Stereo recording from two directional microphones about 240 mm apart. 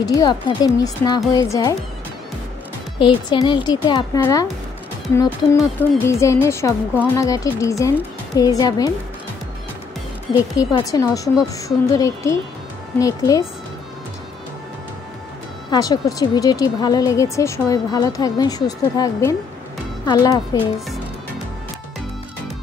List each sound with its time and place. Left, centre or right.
0.0 s speech: centre
3.0 s speech: centre
10.5 s speech: centre
15.7 s speech: centre